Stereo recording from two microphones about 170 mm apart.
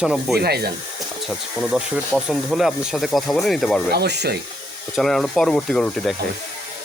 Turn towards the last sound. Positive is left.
turn(degrees=5)  # may be behind; listen again after turning